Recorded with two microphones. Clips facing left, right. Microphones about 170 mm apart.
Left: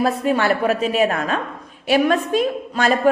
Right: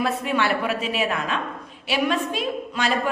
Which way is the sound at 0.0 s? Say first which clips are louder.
Left 5 dB; 40° left (ahead or behind).